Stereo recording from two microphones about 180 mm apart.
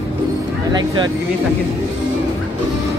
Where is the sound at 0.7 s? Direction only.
25° right (ahead or behind).